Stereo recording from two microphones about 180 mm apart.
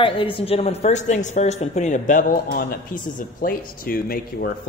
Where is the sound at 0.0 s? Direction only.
30° left (ahead or behind).